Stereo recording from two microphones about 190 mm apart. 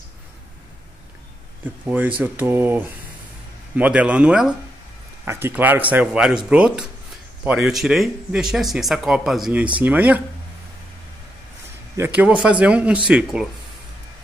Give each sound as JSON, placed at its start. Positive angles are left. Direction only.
{"t": 1.6, "sound": "speech", "side_deg": -10}
{"t": 12.0, "sound": "speech", "side_deg": -10}